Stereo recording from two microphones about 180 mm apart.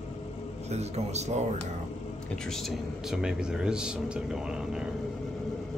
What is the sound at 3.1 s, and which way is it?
Speech, 5° right (ahead or behind).